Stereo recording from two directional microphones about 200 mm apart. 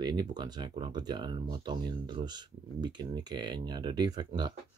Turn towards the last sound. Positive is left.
turn(degrees=-20)  # may be behind; listen again after turning